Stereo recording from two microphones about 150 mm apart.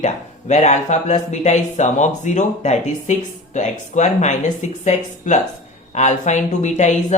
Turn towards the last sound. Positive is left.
turn(degrees=50)  # may be behind; listen again after turning